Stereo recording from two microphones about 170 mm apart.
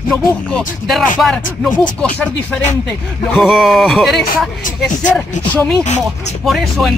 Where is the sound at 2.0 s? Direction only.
5° left (ahead or behind).